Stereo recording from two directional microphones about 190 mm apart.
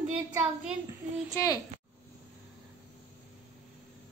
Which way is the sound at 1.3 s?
15° left (ahead or behind).